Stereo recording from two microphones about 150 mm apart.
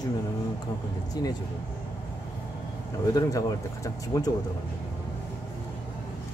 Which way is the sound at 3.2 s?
25° left (ahead or behind).